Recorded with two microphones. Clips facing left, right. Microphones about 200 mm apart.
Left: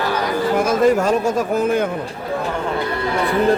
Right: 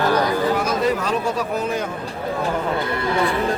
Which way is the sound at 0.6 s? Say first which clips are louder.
Left 6 dB; 50° left (ahead or behind).